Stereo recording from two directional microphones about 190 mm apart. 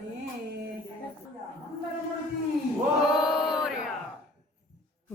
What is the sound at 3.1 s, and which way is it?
Male singing, centre (ahead or behind).